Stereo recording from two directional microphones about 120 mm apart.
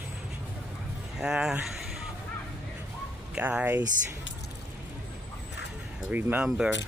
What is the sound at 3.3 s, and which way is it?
Speech, 10° right (ahead or behind).